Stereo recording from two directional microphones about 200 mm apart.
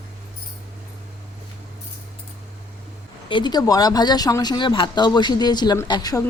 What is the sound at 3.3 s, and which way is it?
Speech, 25° left (ahead or behind).